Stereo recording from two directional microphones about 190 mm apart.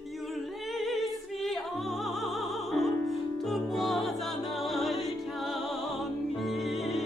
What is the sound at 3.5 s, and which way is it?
Music, centre (ahead or behind).